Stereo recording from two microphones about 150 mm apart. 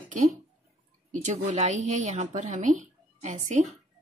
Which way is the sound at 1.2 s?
55° right (ahead or behind).